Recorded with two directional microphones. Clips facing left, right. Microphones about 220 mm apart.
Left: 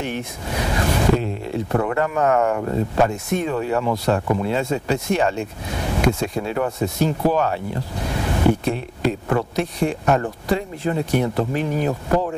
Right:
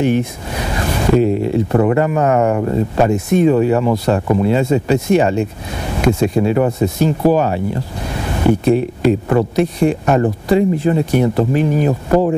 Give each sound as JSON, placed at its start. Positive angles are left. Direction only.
{"t": 0.0, "sound": "speech", "side_deg": -10}
{"t": 3.1, "sound": "speech", "side_deg": -5}
{"t": 8.1, "sound": "a sound", "side_deg": -10}
{"t": 9.6, "sound": "speech", "side_deg": -5}
{"t": 10.0, "sound": "speech", "side_deg": -20}
{"t": 10.5, "sound": "speech", "side_deg": -10}